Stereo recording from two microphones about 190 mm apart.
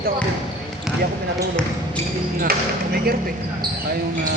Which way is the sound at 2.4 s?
50° right (ahead or behind).